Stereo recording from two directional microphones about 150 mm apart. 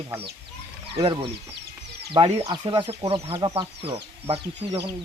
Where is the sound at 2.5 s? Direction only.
30° right (ahead or behind).